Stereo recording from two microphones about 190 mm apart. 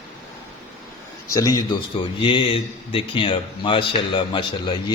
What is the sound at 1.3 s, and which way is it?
A man's voice, 20° left (ahead or behind).